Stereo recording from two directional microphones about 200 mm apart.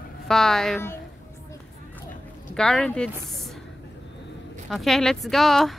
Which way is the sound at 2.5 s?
5° left (ahead or behind).